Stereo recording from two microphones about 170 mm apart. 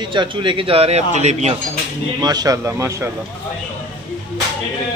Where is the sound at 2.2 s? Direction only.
20° right (ahead or behind).